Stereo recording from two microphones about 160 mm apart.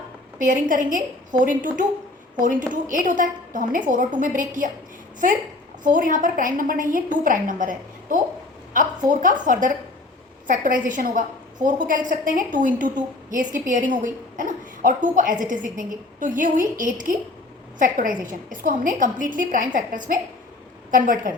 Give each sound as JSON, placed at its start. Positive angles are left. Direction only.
{"t": 0.3, "sound": "a woman's voice", "side_deg": -55}
{"t": 5.8, "sound": "a woman's voice", "side_deg": -55}